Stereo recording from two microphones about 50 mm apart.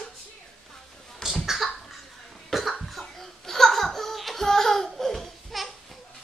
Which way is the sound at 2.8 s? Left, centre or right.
Centre.